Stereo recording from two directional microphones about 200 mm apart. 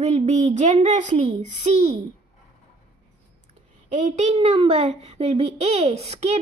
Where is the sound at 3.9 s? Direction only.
35° right (ahead or behind).